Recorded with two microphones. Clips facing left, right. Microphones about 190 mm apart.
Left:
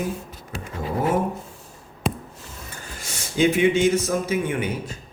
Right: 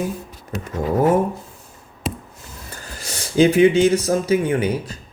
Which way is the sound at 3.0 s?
35° right (ahead or behind).